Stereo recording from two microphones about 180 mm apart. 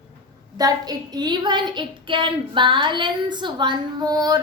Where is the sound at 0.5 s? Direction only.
20° right (ahead or behind).